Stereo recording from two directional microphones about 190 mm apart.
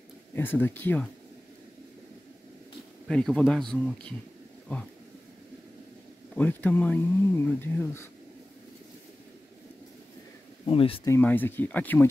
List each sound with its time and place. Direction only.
0.4 s speech: 10° left (ahead or behind)
3.1 s speech: 5° left (ahead or behind)
6.3 s speech: 10° left (ahead or behind)
10.7 s speech: 30° left (ahead or behind)
11.1 s speech: 10° left (ahead or behind)